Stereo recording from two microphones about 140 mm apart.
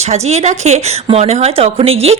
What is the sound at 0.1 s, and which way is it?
A woman's voice, 55° right (ahead or behind).